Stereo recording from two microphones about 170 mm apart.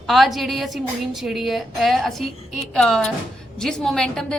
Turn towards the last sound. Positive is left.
turn(degrees=5)  # may be behind; listen again after turning